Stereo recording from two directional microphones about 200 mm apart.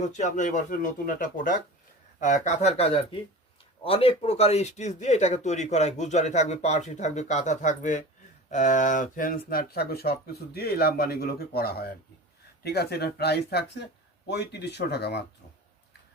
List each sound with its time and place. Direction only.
0.0 s speech: 35° left (ahead or behind); by 15.2 s 55° left (ahead or behind)